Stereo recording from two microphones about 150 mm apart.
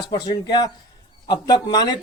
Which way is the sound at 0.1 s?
25° left (ahead or behind).